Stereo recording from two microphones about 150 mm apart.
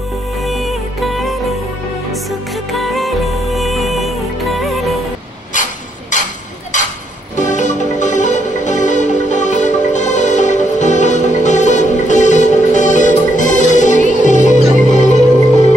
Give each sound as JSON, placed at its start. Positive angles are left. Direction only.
{"t": 0.5, "sound": "music", "side_deg": 0}
{"t": 2.8, "sound": "music", "side_deg": 0}
{"t": 5.5, "sound": "a sound", "side_deg": 60}
{"t": 7.3, "sound": "music", "side_deg": 55}